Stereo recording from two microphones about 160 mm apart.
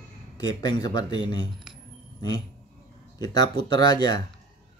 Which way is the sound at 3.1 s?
25° left (ahead or behind).